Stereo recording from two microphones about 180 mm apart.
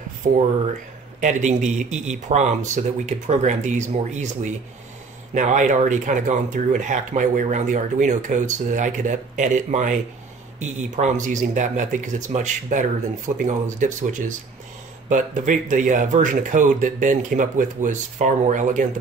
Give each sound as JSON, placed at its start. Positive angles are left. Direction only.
{"t": 0.2, "sound": "speech", "side_deg": -45}